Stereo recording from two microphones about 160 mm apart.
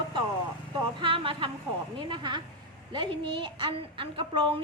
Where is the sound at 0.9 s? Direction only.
35° right (ahead or behind).